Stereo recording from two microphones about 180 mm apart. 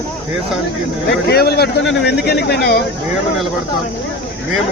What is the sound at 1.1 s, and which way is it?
A man's voice, 65° left (ahead or behind).